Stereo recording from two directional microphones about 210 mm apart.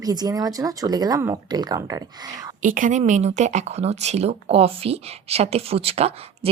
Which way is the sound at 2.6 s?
40° right (ahead or behind).